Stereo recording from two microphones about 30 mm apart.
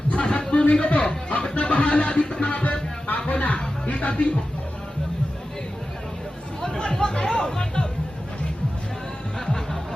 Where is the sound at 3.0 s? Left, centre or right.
Left.